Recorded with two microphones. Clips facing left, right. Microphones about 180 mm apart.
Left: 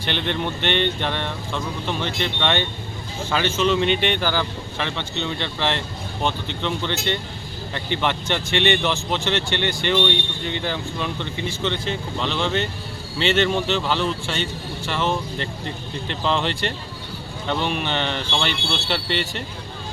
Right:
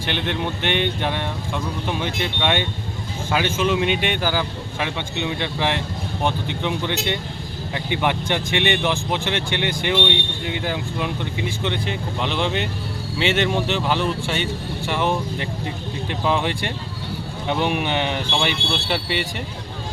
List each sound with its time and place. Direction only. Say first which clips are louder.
0.0 s speech: even; 5° right (ahead or behind)